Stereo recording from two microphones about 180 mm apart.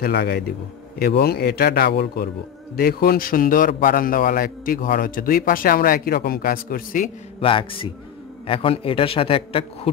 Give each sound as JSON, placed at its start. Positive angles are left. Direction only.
{"t": 0.0, "sound": "a man's voice", "side_deg": 60}
{"t": 7.3, "sound": "a man's voice", "side_deg": 30}